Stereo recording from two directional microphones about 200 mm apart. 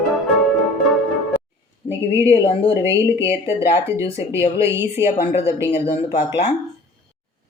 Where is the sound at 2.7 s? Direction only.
15° right (ahead or behind).